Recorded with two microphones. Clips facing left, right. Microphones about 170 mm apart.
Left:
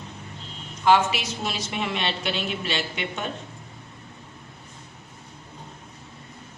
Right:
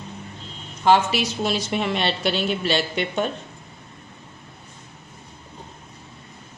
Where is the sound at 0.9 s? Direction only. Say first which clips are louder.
Right 2 dB; 40° right (ahead or behind).